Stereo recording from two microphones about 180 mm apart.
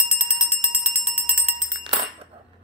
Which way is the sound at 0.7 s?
50° right (ahead or behind).